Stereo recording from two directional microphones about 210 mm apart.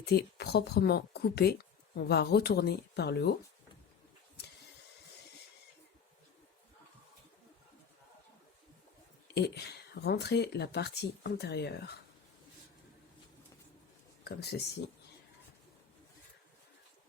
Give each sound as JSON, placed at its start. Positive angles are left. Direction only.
{"t": 0.0, "sound": "speech", "side_deg": 50}
{"t": 9.2, "sound": "speech", "side_deg": 50}
{"t": 14.3, "sound": "speech", "side_deg": 50}